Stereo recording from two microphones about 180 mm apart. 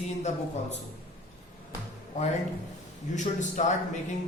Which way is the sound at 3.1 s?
40° left (ahead or behind).